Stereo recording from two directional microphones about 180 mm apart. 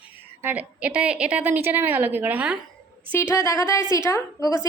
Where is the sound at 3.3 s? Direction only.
15° left (ahead or behind).